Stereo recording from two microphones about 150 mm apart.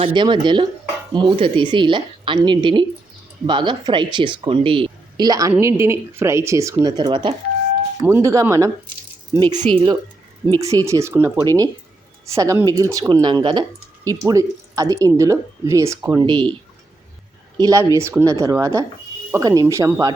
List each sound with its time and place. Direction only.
0.0 s a woman's voice: 30° right (ahead or behind)
8.0 s speech: 15° right (ahead or behind)
9.7 s a woman's voice: 35° right (ahead or behind)
10.6 s speech: 20° right (ahead or behind)
16.2 s a woman's voice: 35° right (ahead or behind)
17.6 s speech: 25° right (ahead or behind)